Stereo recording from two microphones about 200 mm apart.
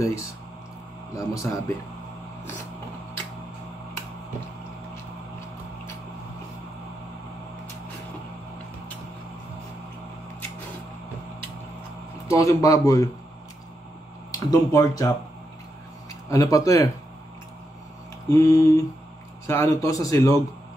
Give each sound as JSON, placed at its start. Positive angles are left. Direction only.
{"t": 0.0, "sound": "speech", "side_deg": 15}
{"t": 12.3, "sound": "speech", "side_deg": 15}
{"t": 14.5, "sound": "speech", "side_deg": 15}
{"t": 16.1, "sound": "speech", "side_deg": 15}
{"t": 18.3, "sound": "speech", "side_deg": 15}